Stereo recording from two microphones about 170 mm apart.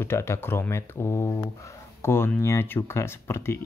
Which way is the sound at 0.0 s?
15° left (ahead or behind).